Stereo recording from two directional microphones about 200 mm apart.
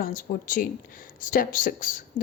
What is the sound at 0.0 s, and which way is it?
A woman's voice, 40° left (ahead or behind).